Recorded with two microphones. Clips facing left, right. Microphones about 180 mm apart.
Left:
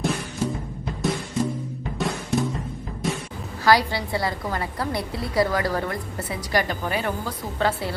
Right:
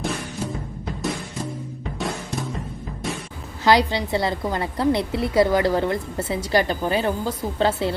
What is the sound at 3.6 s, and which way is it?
A woman's voice, 20° right (ahead or behind).